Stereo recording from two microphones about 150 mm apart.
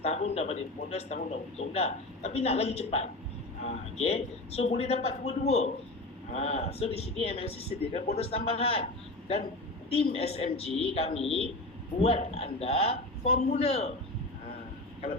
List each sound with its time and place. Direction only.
0.0 s a man's voice: 45° left (ahead or behind)